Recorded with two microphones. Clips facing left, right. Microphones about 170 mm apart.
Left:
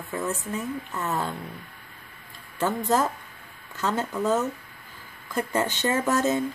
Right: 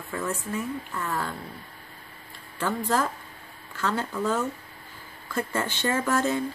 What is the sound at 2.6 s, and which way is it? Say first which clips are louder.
A woman's voice: left 2 dB; 20° left (ahead or behind).